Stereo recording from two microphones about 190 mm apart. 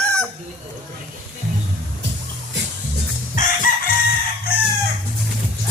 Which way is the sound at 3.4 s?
40° left (ahead or behind).